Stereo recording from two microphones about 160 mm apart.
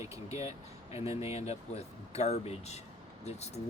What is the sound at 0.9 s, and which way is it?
Speech, 40° left (ahead or behind).